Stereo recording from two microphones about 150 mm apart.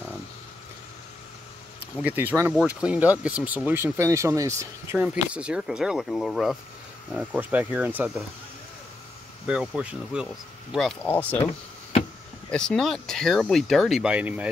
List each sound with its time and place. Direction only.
2.0 s speech: 10° right (ahead or behind)
5.0 s speech: 10° right (ahead or behind)
9.5 s speech: 5° right (ahead or behind); by 11.3 s 10° left (ahead or behind)
12.4 s speech: 5° left (ahead or behind)